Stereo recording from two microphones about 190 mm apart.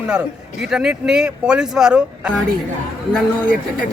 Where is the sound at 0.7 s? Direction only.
5° right (ahead or behind).